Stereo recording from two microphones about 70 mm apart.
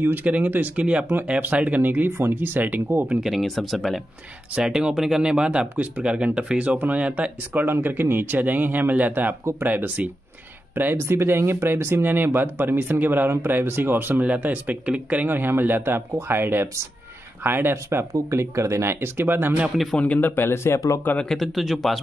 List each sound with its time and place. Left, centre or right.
0.0 s speech: right
3.2 s speech: centre
7.6 s speech: right
17.8 s speech: right
20.0 s a man's voice: left
21.4 s speech: centre